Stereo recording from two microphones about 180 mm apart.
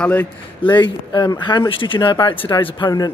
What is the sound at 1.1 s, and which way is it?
Speech, 25° left (ahead or behind).